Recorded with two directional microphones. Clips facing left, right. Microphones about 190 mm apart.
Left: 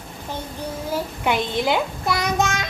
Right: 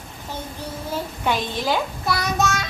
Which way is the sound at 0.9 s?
15° left (ahead or behind).